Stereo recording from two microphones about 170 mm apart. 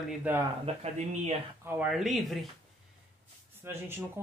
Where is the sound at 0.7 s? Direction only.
40° right (ahead or behind).